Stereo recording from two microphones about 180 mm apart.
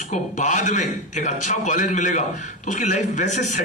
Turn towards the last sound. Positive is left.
turn(degrees=40)  # may be behind; listen again after turning